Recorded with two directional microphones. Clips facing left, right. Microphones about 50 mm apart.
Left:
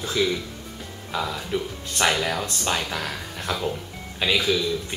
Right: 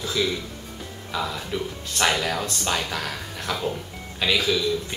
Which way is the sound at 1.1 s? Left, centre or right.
Centre.